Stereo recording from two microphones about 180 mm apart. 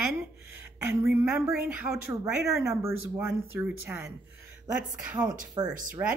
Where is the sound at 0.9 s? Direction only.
15° right (ahead or behind).